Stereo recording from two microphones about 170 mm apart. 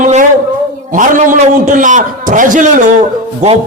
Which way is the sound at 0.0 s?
50° right (ahead or behind).